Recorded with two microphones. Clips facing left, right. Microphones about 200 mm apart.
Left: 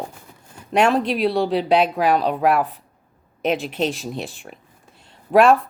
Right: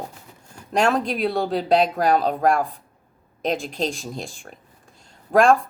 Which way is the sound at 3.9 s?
Centre (ahead or behind).